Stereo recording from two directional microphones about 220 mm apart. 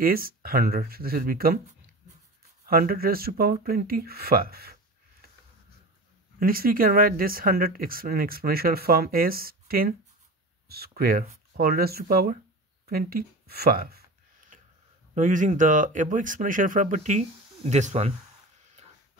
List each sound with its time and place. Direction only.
0.0 s speech: 40° right (ahead or behind)
6.4 s speech: 40° right (ahead or behind)
12.8 s a sound: 45° right (ahead or behind)
15.1 s speech: 35° right (ahead or behind)